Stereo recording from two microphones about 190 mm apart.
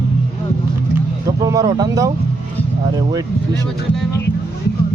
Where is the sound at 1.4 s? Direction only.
20° right (ahead or behind).